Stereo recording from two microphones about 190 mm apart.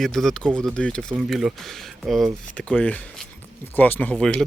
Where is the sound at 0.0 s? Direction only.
Centre (ahead or behind).